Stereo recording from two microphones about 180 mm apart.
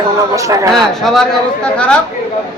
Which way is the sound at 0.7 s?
5° left (ahead or behind).